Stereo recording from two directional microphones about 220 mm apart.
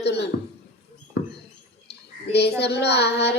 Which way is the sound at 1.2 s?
50° left (ahead or behind).